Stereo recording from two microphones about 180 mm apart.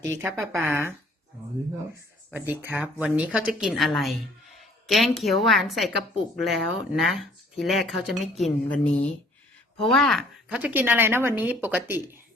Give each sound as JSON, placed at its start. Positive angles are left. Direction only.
{"t": 0.0, "sound": "a woman's voice", "side_deg": -15}
{"t": 2.3, "sound": "a woman's voice", "side_deg": -10}